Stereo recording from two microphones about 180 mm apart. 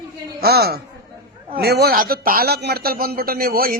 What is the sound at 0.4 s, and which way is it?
A man's voice, 60° right (ahead or behind).